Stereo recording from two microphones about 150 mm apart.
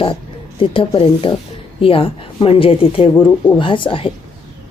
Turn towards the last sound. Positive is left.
turn(degrees=35)  # may be behind; listen again after turning